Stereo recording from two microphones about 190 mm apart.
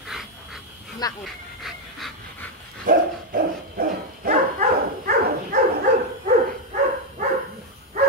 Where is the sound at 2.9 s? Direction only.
50° right (ahead or behind).